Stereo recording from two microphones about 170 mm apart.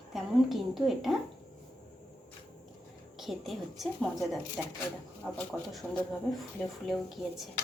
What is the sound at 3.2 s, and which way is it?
A woman's voice, centre (ahead or behind).